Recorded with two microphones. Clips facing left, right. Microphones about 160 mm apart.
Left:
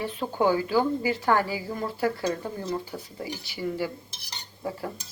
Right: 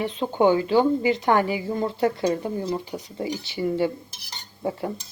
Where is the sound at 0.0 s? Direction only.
20° right (ahead or behind).